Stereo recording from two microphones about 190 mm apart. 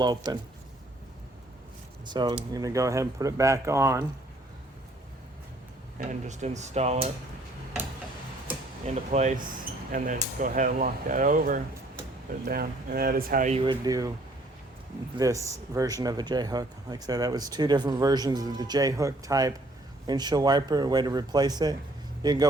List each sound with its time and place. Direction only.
0.0 s speech: 20° right (ahead or behind)
2.0 s speech: 20° right (ahead or behind)
6.0 s speech: 40° right (ahead or behind)
9.0 s speech: 40° right (ahead or behind)
13.5 s speech: 20° right (ahead or behind)
15.1 s a man's voice: 15° right (ahead or behind)